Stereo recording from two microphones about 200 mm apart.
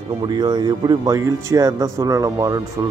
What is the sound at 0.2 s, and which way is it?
Speech, 20° right (ahead or behind).